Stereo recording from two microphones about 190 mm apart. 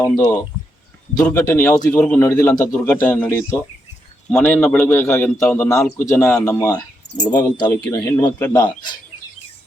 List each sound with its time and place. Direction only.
1.2 s a man's voice: 15° left (ahead or behind)